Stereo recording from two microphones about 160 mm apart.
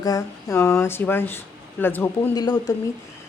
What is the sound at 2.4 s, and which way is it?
Speech, 25° left (ahead or behind).